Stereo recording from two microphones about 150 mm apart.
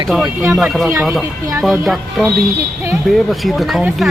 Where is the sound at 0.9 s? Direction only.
15° right (ahead or behind).